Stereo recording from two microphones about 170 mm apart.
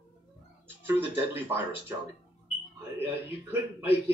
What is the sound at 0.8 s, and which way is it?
Speech, 10° right (ahead or behind).